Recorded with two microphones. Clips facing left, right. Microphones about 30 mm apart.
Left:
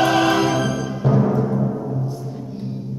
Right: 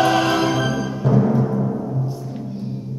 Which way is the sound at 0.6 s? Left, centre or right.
Centre.